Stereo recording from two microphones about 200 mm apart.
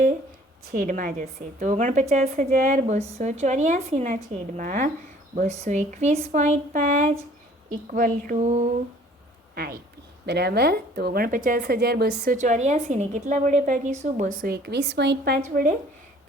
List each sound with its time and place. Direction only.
0.7 s a woman's voice: 40° right (ahead or behind)
9.6 s a woman's voice: 50° right (ahead or behind)
14.4 s a woman's voice: 55° right (ahead or behind)
15.4 s a woman's voice: 40° right (ahead or behind)